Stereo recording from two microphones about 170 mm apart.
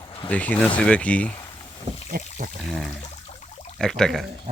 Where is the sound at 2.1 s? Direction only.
60° right (ahead or behind).